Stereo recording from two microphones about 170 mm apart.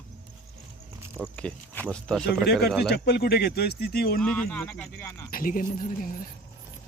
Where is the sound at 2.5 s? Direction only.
70° left (ahead or behind).